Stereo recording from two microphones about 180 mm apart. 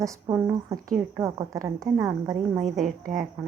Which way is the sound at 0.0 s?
15° right (ahead or behind).